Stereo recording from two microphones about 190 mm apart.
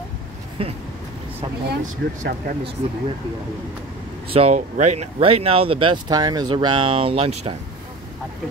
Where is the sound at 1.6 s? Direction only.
45° right (ahead or behind).